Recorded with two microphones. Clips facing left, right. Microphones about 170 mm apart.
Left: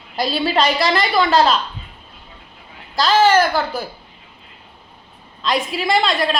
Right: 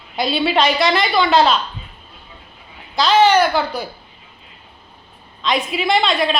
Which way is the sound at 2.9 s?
Centre (ahead or behind).